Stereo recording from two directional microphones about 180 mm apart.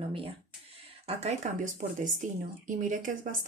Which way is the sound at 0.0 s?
30° right (ahead or behind).